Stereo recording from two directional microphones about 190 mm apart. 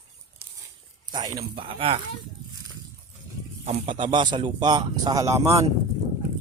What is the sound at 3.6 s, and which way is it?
A man's voice, 30° right (ahead or behind).